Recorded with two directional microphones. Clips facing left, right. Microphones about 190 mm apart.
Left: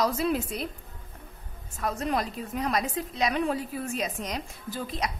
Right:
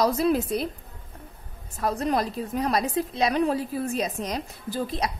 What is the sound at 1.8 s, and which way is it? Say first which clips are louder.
A woman's voice: right 4 dB; 35° right (ahead or behind).